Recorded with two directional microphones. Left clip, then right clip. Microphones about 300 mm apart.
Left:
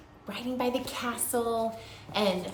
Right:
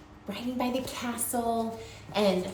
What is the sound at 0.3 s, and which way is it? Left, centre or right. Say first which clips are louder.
A woman's voice: left 1 dB; centre.